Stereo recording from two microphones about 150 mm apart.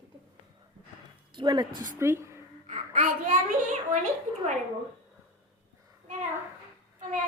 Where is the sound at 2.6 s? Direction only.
60° right (ahead or behind).